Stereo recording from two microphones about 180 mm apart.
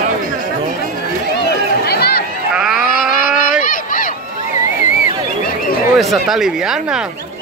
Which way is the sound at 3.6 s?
50° left (ahead or behind).